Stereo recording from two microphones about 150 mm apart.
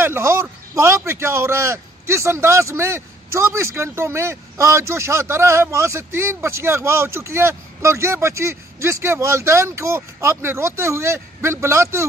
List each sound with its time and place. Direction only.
0.0 s a man's voice: 15° right (ahead or behind)